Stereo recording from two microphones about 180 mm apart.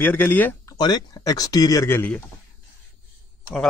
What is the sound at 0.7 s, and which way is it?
Speech, 20° left (ahead or behind).